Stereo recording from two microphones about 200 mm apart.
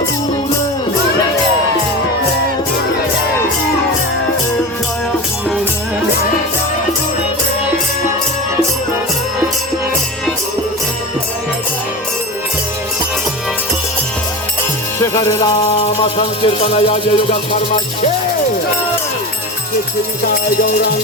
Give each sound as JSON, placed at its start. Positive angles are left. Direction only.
{"t": 14.9, "sound": "music", "side_deg": 15}
{"t": 15.8, "sound": "music", "side_deg": 30}